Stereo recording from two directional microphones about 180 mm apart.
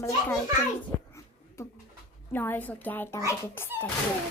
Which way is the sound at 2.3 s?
10° left (ahead or behind).